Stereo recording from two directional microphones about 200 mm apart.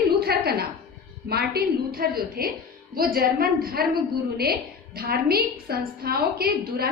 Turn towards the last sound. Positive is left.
turn(degrees=-50)  # may be behind; listen again after turning